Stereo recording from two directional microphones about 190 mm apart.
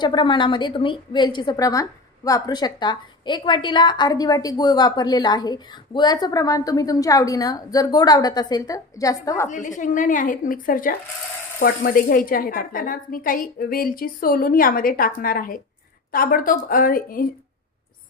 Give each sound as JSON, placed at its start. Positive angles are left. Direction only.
{"t": 0.0, "sound": "a woman's voice", "side_deg": 25}
{"t": 9.5, "sound": "a woman's voice", "side_deg": 40}